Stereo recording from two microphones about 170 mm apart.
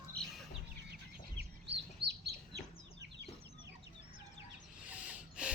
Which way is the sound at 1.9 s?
80° right.